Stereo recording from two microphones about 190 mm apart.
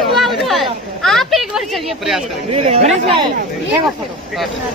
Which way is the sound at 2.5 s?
35° right (ahead or behind).